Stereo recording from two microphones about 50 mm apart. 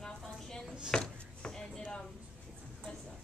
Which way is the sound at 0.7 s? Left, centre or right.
Centre.